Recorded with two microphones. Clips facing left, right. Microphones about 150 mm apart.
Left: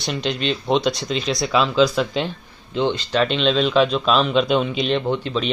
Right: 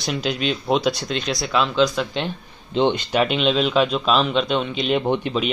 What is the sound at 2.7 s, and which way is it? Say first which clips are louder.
Speech: right 2 dB; 20° right (ahead or behind).